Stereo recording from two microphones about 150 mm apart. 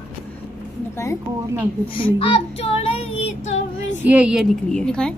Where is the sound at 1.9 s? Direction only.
35° left (ahead or behind).